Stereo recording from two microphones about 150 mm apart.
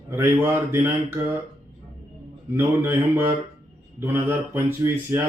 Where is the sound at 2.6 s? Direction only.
15° right (ahead or behind).